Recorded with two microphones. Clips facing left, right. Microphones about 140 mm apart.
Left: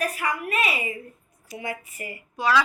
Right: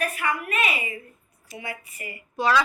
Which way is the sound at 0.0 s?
35° left (ahead or behind).